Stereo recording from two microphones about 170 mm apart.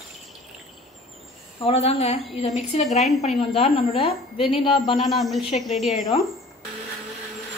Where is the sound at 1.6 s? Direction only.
35° left (ahead or behind).